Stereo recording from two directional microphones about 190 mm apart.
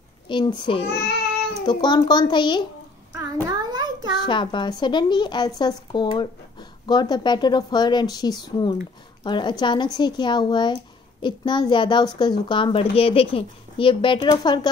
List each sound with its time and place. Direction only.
0.3 s a child's voice: 25° left (ahead or behind)
0.8 s child singing: 60° left (ahead or behind)
1.6 s a child's voice: 25° left (ahead or behind)
3.4 s a sound: 20° right (ahead or behind)
4.3 s a child's voice: 25° left (ahead or behind)